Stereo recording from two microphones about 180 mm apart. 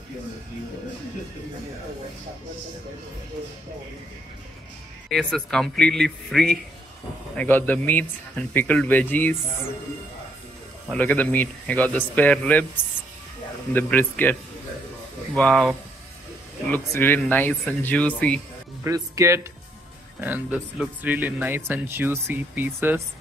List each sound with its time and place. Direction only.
5.1 s speech: 5° left (ahead or behind)
10.9 s speech: 10° left (ahead or behind)
13.7 s speech: 10° left (ahead or behind)
15.3 s speech: 5° left (ahead or behind)
16.7 s speech: 10° left (ahead or behind)
18.9 s speech: 15° right (ahead or behind)